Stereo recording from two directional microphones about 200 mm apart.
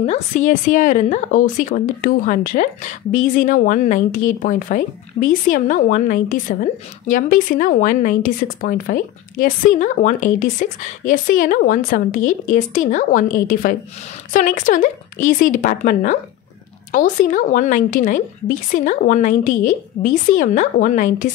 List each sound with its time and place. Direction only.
0.0 s a woman's voice: 35° left (ahead or behind)